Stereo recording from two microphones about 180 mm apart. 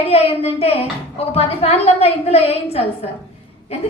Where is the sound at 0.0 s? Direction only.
35° left (ahead or behind).